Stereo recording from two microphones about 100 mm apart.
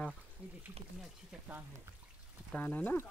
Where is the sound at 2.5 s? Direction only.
15° left (ahead or behind).